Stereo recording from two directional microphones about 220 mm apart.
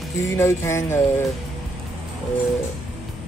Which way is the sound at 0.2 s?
15° left (ahead or behind).